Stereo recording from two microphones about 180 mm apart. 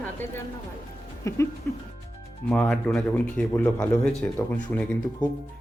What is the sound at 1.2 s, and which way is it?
Speech, 15° left (ahead or behind).